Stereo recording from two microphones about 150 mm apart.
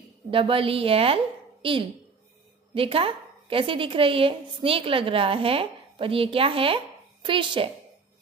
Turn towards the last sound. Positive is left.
turn(degrees=-35)  # may be behind; listen again after turning